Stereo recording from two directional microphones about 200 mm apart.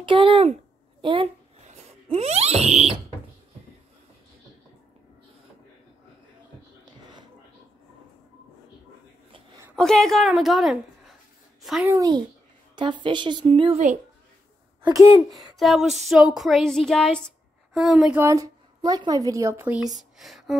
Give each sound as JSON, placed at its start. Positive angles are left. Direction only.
{"t": 0.0, "sound": "speech", "side_deg": -25}
{"t": 1.0, "sound": "a sound", "side_deg": -30}
{"t": 9.8, "sound": "a woman's voice", "side_deg": 5}
{"t": 11.9, "sound": "speech", "side_deg": -15}
{"t": 14.8, "sound": "speech", "side_deg": -15}
{"t": 15.3, "sound": "a sound", "side_deg": 0}
{"t": 18.2, "sound": "a woman's voice", "side_deg": -15}